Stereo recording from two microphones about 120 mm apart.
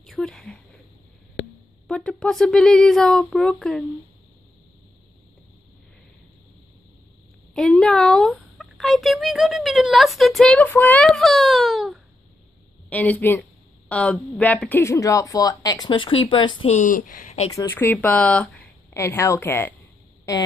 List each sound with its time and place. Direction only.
0.0 s a sound: 5° left (ahead or behind)
1.9 s speech: 5° left (ahead or behind)
7.5 s speech: 5° left (ahead or behind)
10.7 s speech: 15° left (ahead or behind)
11.1 s speech: centre (ahead or behind)
12.9 s speech: 15° left (ahead or behind); by 15.9 s 30° left (ahead or behind)
15.9 s speech: 45° left (ahead or behind)
16.6 s speech: 80° left
17.6 s speech: 15° left (ahead or behind)
18.9 s a woman's voice: 25° left (ahead or behind)